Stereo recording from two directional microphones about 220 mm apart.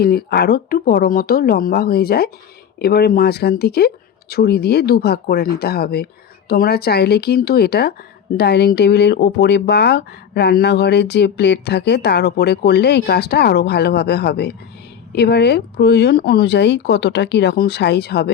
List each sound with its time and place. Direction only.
0.0 s speech: 45° left (ahead or behind)